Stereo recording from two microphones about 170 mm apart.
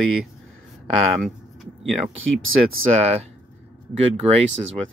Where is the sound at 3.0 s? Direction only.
40° right (ahead or behind).